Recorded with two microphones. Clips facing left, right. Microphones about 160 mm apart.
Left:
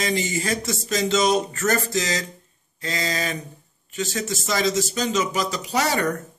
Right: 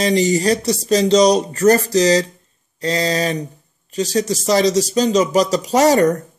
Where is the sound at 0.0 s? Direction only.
40° right (ahead or behind).